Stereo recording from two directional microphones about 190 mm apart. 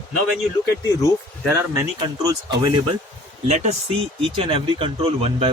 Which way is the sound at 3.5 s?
35° right (ahead or behind).